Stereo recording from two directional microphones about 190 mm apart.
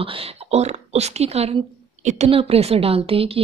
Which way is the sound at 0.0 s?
35° right (ahead or behind).